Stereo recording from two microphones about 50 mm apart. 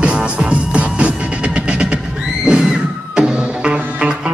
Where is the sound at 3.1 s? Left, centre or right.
Right.